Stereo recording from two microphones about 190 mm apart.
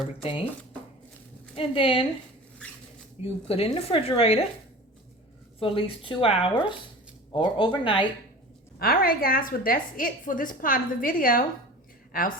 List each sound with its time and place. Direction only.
0.2 s speech: 30° left (ahead or behind)
1.5 s a woman's voice: 30° left (ahead or behind)
3.4 s speech: 30° left (ahead or behind)
5.5 s a woman's voice: 30° left (ahead or behind)
8.8 s a woman's voice: 50° left (ahead or behind)